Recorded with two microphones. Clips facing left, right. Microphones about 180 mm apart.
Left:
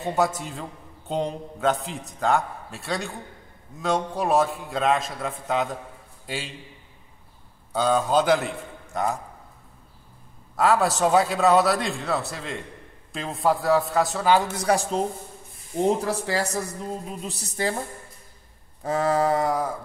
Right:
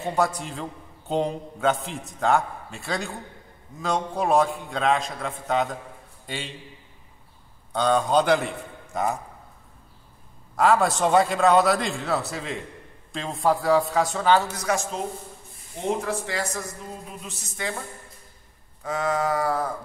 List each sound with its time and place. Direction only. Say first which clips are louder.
0.0 s a man's voice: left 1 dB; 5° left (ahead or behind)
7.7 s a man's voice: even; 5° left (ahead or behind)
10.5 s a man's voice: right 1 dB; centre (ahead or behind)
14.5 s speech: left 4 dB; 30° left (ahead or behind)
16.1 s speech: left 3 dB; 35° left (ahead or behind)
19.4 s a sound: left 1 dB; 15° left (ahead or behind)